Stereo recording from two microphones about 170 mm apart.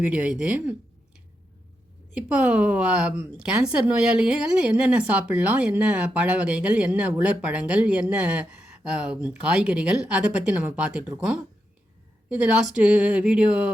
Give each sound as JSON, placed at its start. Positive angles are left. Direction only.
{"t": 0.0, "sound": "a woman's voice", "side_deg": -5}
{"t": 2.1, "sound": "a woman's voice", "side_deg": -5}
{"t": 12.3, "sound": "a woman's voice", "side_deg": -5}